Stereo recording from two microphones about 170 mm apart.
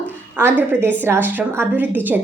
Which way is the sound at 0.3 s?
10° right (ahead or behind).